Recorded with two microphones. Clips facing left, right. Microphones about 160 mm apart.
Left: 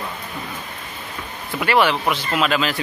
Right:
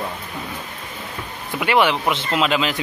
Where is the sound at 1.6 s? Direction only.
15° right (ahead or behind).